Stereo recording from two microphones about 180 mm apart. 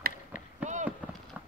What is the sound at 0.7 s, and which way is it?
Fireworks, 40° right (ahead or behind).